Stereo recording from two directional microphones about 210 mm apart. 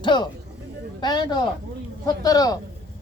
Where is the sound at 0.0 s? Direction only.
20° left (ahead or behind).